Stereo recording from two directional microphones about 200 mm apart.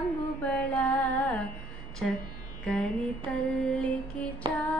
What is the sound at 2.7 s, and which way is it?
Mantra, 5° left (ahead or behind).